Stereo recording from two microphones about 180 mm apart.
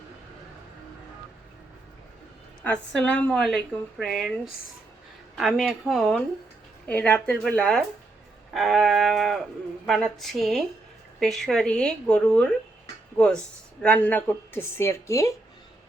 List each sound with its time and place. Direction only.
2.6 s a woman's voice: 5° left (ahead or behind)